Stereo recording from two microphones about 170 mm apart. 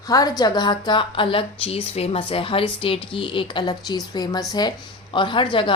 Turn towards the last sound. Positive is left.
turn(degrees=30)  # may be behind; listen again after turning